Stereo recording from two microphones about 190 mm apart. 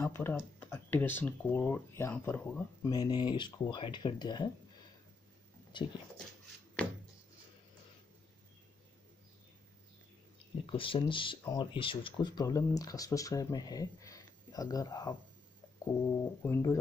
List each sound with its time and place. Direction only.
0.0 s speech: 10° left (ahead or behind)
2.9 s speech: 20° left (ahead or behind)
5.7 s speech: 25° left (ahead or behind)
10.7 s speech: 25° left (ahead or behind)
16.2 s speech: 15° left (ahead or behind)